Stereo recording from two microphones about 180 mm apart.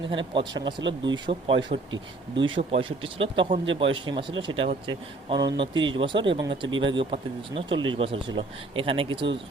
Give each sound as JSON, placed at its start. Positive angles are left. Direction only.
{"t": 0.1, "sound": "speech", "side_deg": -25}